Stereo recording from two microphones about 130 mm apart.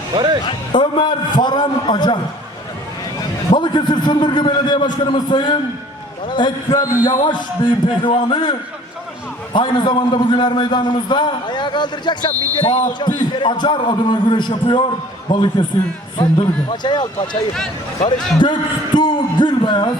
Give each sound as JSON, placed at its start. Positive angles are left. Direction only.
{"t": 0.1, "sound": "speech", "side_deg": -35}
{"t": 0.4, "sound": "a man's voice", "side_deg": 35}
{"t": 3.2, "sound": "a man's voice", "side_deg": 35}
{"t": 18.3, "sound": "a man's voice", "side_deg": 35}